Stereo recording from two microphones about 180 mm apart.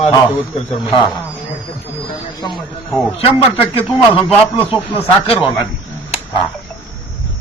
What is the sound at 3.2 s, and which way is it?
A man's voice, 35° left (ahead or behind).